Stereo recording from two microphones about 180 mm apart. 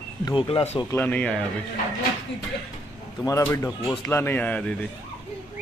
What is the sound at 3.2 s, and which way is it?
Speech, 15° left (ahead or behind).